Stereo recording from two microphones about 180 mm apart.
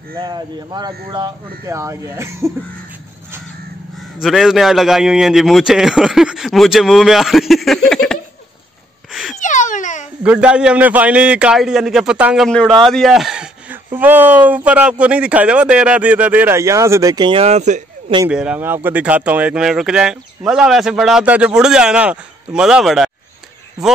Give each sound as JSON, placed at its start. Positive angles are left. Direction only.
{"t": 0.2, "sound": "speech", "side_deg": -25}
{"t": 4.2, "sound": "speech", "side_deg": 0}
{"t": 9.1, "sound": "a sound", "side_deg": 0}
{"t": 9.4, "sound": "a sound", "side_deg": 45}
{"t": 10.2, "sound": "speech", "side_deg": -5}
{"t": 18.3, "sound": "speech", "side_deg": -5}